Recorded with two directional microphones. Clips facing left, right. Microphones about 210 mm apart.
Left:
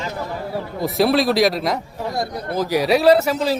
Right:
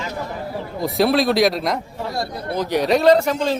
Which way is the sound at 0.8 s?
Centre (ahead or behind).